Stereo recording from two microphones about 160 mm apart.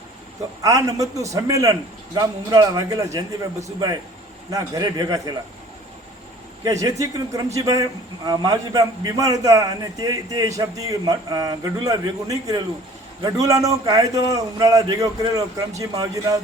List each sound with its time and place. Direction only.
0.6 s a man's voice: 20° right (ahead or behind)
6.7 s a man's voice: 20° right (ahead or behind)